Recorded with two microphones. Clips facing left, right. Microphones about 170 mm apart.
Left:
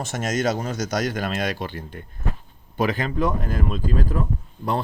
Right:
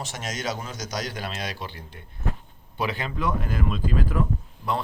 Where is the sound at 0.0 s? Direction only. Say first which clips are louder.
Left 8 dB; 50° left (ahead or behind).